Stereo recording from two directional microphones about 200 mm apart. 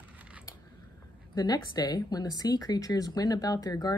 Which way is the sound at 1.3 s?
20° left (ahead or behind).